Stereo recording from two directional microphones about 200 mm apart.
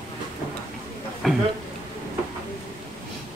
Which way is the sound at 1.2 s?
Centre (ahead or behind).